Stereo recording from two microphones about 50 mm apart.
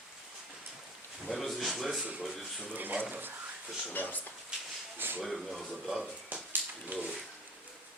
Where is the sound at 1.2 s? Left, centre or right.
Centre.